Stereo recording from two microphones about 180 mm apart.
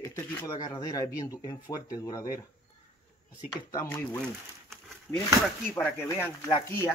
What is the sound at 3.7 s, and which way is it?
Speech, 15° left (ahead or behind).